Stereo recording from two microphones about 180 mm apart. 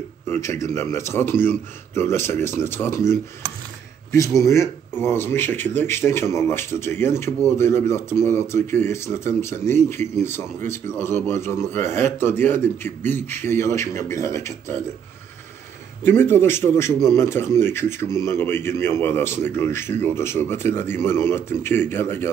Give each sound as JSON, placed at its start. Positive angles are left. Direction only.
{"t": 0.3, "sound": "speech", "side_deg": 15}
{"t": 4.4, "sound": "speech", "side_deg": 15}
{"t": 16.0, "sound": "speech", "side_deg": 10}